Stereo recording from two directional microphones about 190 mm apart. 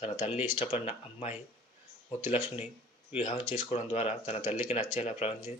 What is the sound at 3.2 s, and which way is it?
Speech, 35° left (ahead or behind).